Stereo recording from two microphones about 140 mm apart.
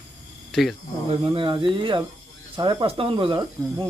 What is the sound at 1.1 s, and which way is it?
Speech, 40° right (ahead or behind).